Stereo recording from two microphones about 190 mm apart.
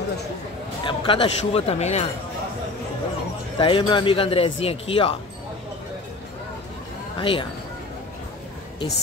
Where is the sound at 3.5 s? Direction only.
25° left (ahead or behind).